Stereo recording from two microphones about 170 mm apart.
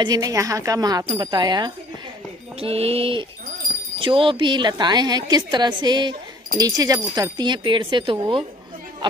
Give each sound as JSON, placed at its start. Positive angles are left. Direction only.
{"t": 0.0, "sound": "a woman's voice", "side_deg": -20}
{"t": 2.6, "sound": "a woman's voice", "side_deg": -35}